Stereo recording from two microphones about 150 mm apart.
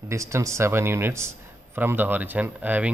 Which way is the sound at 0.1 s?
20° right (ahead or behind).